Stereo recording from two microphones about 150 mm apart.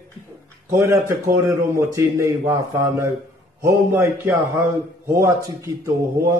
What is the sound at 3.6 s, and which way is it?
A man's voice, 20° right (ahead or behind).